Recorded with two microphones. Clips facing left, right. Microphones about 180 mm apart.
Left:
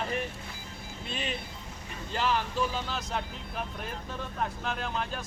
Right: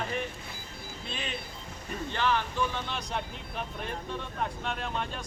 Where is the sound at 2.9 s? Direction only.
Centre (ahead or behind).